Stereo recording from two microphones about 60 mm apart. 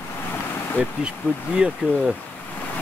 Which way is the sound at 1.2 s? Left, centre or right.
Left.